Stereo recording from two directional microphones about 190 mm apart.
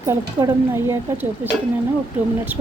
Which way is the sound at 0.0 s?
20° right (ahead or behind).